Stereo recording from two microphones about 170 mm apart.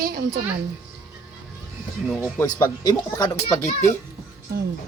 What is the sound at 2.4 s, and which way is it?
A child's voice, 20° left (ahead or behind).